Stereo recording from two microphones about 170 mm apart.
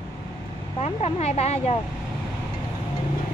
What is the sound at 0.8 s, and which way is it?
Speech, 40° left (ahead or behind).